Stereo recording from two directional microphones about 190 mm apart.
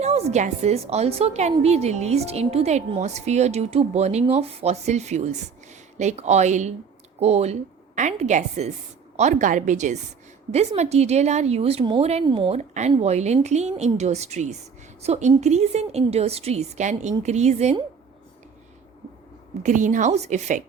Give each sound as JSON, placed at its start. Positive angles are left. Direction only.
{"t": 0.0, "sound": "a woman's voice", "side_deg": -35}
{"t": 19.6, "sound": "a woman's voice", "side_deg": -40}